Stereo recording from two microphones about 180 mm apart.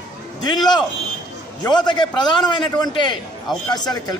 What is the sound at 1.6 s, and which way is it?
A man's voice, 25° left (ahead or behind).